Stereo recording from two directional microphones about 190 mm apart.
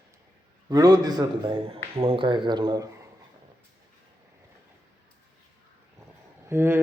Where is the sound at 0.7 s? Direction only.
20° right (ahead or behind).